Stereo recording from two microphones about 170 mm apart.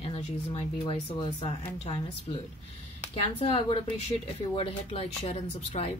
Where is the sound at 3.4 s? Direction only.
30° left (ahead or behind).